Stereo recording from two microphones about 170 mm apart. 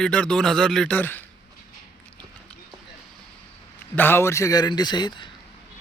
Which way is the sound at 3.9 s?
10° left (ahead or behind).